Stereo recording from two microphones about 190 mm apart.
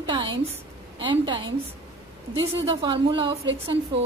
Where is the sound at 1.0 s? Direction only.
25° right (ahead or behind).